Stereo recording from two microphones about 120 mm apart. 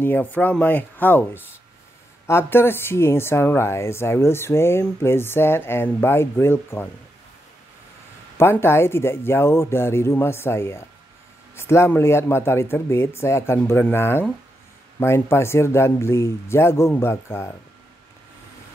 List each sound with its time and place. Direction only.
0.0 s speech: 15° left (ahead or behind)
8.4 s speech: 20° left (ahead or behind)